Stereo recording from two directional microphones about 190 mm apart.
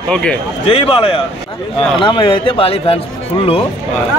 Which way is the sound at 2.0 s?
25° left (ahead or behind).